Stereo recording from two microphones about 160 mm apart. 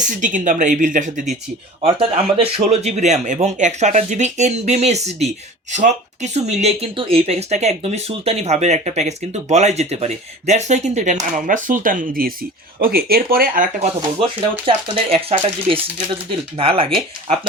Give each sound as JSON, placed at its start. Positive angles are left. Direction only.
{"t": 0.1, "sound": "speech", "side_deg": -55}
{"t": 1.8, "sound": "speech", "side_deg": -40}
{"t": 14.7, "sound": "speech", "side_deg": -35}